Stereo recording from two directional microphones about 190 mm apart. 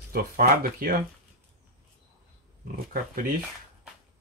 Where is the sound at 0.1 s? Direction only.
50° right (ahead or behind).